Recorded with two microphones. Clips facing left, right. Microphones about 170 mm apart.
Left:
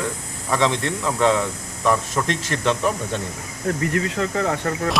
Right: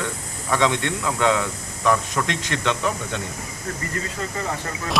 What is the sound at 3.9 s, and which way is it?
Speech, 70° left (ahead or behind).